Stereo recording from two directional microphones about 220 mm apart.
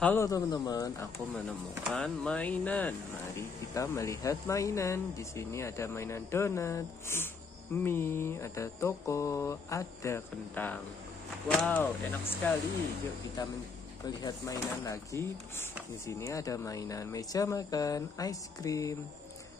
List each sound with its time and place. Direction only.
0.0 s speech: 10° left (ahead or behind)
1.9 s speech: centre (ahead or behind)
13.4 s speech: 20° left (ahead or behind)